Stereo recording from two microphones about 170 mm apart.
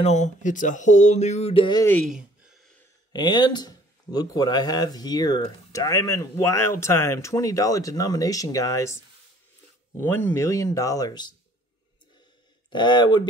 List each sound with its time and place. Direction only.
0.0 s speech: 45° left (ahead or behind); by 1.9 s 25° left (ahead or behind)
2.0 s a sound: 5° right (ahead or behind)
3.1 s speech: 25° left (ahead or behind)
12.6 s speech: 25° left (ahead or behind)